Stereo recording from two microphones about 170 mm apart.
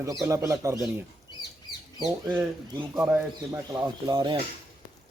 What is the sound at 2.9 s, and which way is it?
Speech, 10° right (ahead or behind).